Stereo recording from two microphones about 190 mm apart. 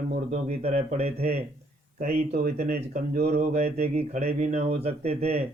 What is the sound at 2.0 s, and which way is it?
Speech, 50° right (ahead or behind).